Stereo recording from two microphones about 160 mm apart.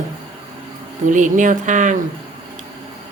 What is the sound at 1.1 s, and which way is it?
Speech, 55° right (ahead or behind).